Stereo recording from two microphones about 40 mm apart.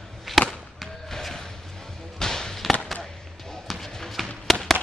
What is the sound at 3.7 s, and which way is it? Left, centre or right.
Basketball bounce, centre.